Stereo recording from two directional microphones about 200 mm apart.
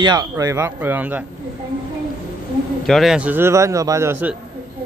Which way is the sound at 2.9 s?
Centre (ahead or behind).